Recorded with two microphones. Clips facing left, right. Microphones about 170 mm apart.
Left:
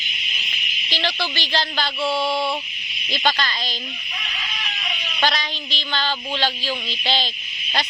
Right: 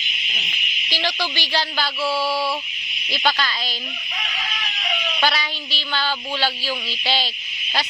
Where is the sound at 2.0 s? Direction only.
20° left (ahead or behind).